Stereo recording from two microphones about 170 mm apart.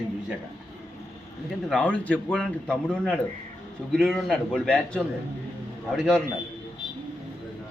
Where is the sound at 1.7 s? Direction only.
5° left (ahead or behind).